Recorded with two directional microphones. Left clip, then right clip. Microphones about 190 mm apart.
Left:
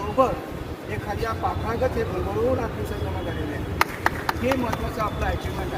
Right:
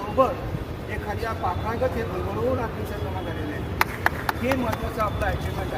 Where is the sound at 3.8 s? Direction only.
15° right (ahead or behind).